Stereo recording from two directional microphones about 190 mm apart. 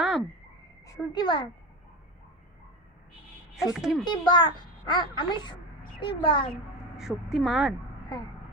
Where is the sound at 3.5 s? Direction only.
Centre (ahead or behind).